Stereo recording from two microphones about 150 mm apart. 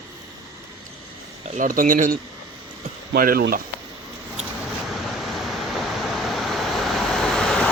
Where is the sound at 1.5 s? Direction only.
65° right (ahead or behind).